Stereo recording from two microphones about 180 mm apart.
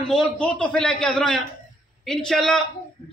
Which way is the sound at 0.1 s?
5° left (ahead or behind).